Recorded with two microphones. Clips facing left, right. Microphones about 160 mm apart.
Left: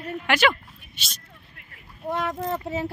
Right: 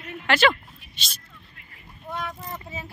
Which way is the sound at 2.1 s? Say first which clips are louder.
Left 7 dB; 80° left.